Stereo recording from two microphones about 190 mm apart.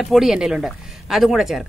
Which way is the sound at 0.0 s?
Centre (ahead or behind).